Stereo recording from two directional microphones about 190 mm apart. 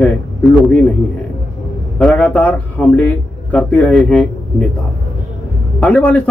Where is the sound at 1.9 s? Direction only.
5° left (ahead or behind).